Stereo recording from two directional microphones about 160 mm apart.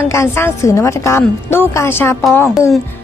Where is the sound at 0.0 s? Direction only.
15° left (ahead or behind).